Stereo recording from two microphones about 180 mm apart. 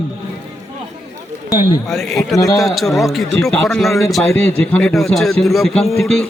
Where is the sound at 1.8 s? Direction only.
Centre (ahead or behind).